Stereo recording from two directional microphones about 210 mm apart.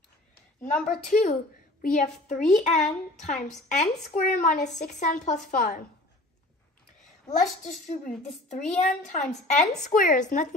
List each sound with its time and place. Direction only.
0.8 s a woman's voice: 40° left (ahead or behind)
7.3 s a woman's voice: 35° left (ahead or behind)